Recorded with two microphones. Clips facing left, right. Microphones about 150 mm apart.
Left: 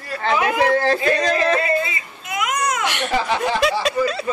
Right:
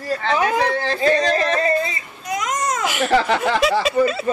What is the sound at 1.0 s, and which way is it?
Speech, 35° right (ahead or behind).